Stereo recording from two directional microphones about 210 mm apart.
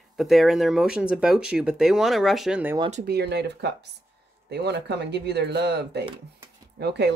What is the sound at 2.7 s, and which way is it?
Speech, 30° right (ahead or behind).